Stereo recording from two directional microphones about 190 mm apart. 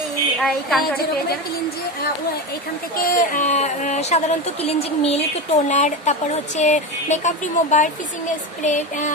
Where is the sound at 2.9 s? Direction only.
50° left (ahead or behind).